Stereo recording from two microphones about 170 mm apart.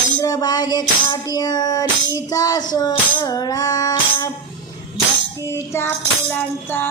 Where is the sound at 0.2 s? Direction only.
20° left (ahead or behind).